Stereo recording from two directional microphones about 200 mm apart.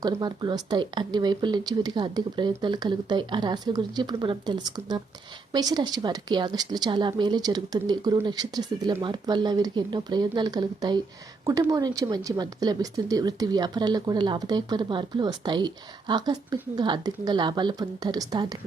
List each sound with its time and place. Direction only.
0.0 s speech: 20° right (ahead or behind)